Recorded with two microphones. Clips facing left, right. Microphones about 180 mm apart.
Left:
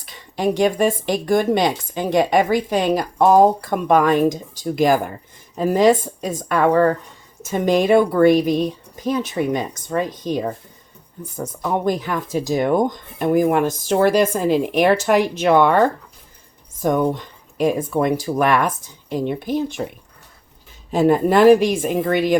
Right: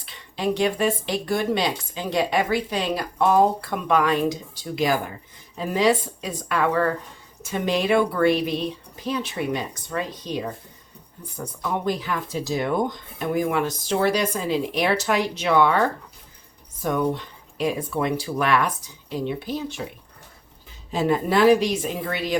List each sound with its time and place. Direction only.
0.0 s a woman's voice: 45° left (ahead or behind)
16.8 s a woman's voice: 45° left (ahead or behind)
20.9 s a woman's voice: 50° left (ahead or behind)